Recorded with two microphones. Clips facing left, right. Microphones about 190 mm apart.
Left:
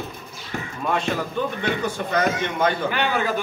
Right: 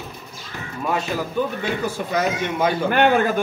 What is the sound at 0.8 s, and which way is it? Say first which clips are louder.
A man's voice: right 1 dB; 5° right (ahead or behind).